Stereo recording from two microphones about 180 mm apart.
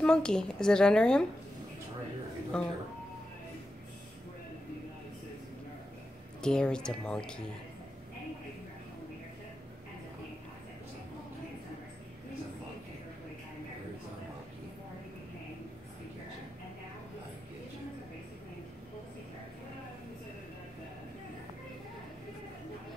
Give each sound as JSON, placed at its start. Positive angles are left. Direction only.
{"t": 0.0, "sound": "speech", "side_deg": 5}
{"t": 2.5, "sound": "speech", "side_deg": 5}
{"t": 6.4, "sound": "speech", "side_deg": 5}